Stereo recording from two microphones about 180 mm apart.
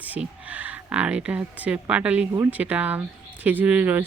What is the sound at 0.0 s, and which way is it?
Speech, 10° right (ahead or behind).